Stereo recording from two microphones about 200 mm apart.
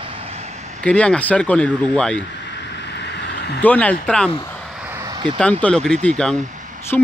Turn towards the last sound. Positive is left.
turn(degrees=5)  # may be behind; listen again after turning